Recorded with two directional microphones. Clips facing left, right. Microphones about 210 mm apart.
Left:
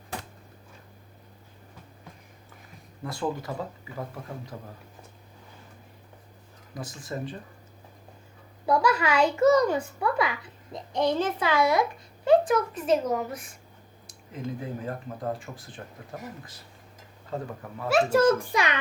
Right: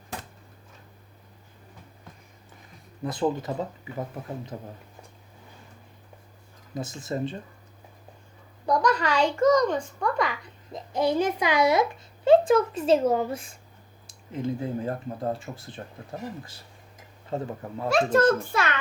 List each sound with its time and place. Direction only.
3.0 s speech: 20° right (ahead or behind)
6.7 s speech: 25° right (ahead or behind)
8.6 s a child's voice: 5° left (ahead or behind); by 16.2 s 25° right (ahead or behind)
17.3 s speech: 25° right (ahead or behind)
17.8 s a child's voice: 5° left (ahead or behind)